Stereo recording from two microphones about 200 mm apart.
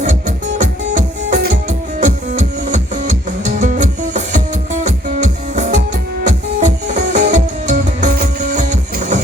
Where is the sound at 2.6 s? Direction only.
40° right (ahead or behind).